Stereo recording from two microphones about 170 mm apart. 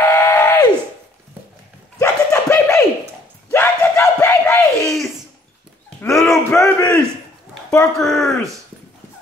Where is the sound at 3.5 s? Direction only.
15° left (ahead or behind).